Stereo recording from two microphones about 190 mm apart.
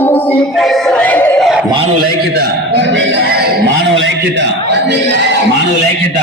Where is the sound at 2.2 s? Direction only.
60° right (ahead or behind).